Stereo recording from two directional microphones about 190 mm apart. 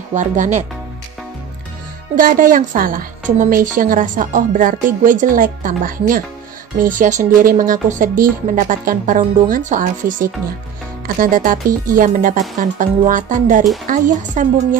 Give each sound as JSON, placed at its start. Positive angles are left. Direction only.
{"t": 0.1, "sound": "speech", "side_deg": -40}
{"t": 2.1, "sound": "a woman's voice", "side_deg": -45}